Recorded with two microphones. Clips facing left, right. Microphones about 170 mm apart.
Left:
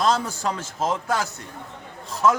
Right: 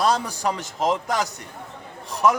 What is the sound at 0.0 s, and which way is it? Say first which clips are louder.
A man's voice: even; 15° right (ahead or behind).